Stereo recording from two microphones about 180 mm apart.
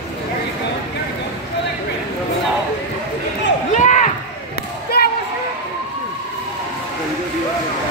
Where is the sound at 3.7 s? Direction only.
45° left (ahead or behind).